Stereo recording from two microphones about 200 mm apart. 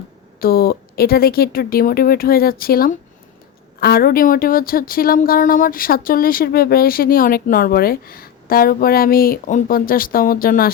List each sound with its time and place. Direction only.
0.3 s speech: 50° left (ahead or behind)